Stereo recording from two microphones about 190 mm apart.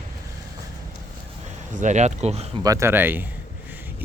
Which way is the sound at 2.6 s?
15° right (ahead or behind).